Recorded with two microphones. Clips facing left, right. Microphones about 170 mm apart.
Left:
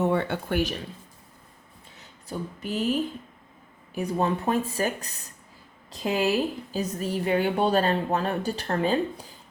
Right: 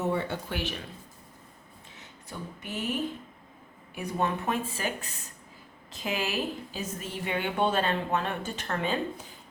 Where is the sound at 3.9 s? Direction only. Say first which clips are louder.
Left 4 dB; 35° left (ahead or behind).